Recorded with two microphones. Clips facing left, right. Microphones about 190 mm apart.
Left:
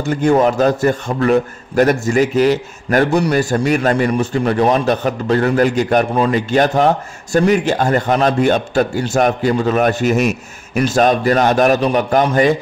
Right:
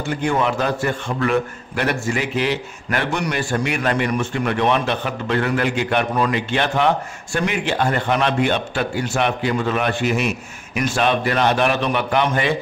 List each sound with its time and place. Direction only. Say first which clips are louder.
0.0 s a man's voice: left 7 dB; 45° left (ahead or behind)